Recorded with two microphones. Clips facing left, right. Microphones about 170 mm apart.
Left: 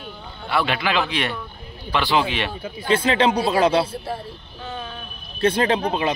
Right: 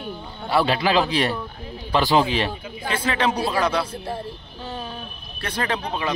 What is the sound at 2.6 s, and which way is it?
Speech, 20° left (ahead or behind).